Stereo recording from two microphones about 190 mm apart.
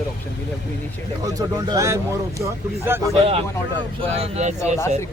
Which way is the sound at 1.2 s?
20° right (ahead or behind).